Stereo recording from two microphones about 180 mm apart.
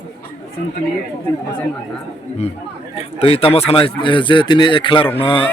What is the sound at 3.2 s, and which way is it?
A man's voice, 30° left (ahead or behind).